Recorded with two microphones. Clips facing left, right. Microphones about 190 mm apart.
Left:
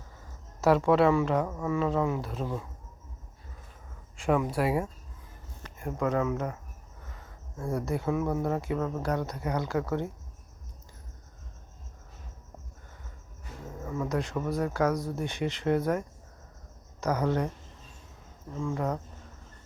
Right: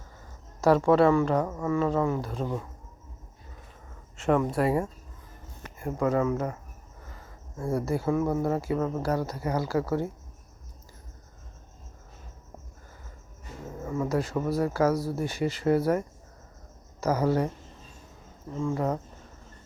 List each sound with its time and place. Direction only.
0.6 s speech: centre (ahead or behind)
4.2 s speech: 5° left (ahead or behind)
13.7 s speech: 5° right (ahead or behind)
18.5 s speech: 5° right (ahead or behind)